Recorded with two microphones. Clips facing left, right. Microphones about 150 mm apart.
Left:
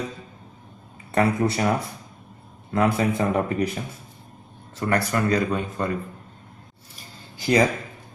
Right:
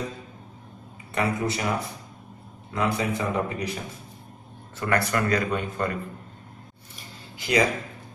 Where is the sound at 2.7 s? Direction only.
50° left (ahead or behind).